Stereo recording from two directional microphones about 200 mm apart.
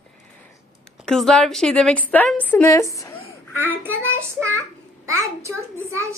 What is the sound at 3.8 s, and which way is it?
A child's voice, 10° right (ahead or behind).